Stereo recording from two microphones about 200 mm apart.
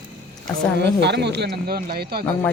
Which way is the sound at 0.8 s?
55° right (ahead or behind).